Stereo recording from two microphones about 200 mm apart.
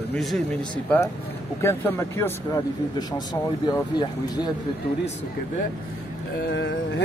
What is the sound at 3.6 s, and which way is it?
Speech, 20° left (ahead or behind).